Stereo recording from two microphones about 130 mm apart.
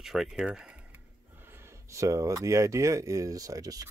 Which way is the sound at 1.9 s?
25° right (ahead or behind).